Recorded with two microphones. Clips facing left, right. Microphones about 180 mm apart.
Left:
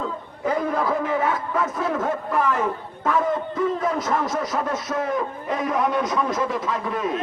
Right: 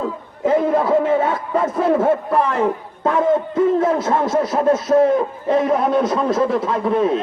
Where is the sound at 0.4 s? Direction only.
25° right (ahead or behind).